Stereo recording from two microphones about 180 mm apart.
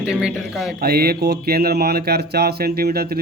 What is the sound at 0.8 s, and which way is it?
A man's voice, 60° right (ahead or behind).